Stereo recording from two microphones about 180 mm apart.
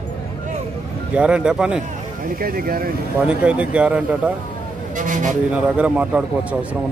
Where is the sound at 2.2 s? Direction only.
55° right (ahead or behind).